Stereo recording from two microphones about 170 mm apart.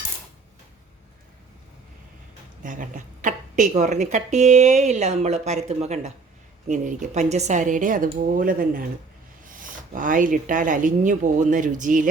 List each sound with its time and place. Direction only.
2.6 s speech: 50° right (ahead or behind)